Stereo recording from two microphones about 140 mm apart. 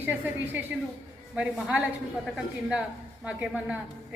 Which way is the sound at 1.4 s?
5° right (ahead or behind).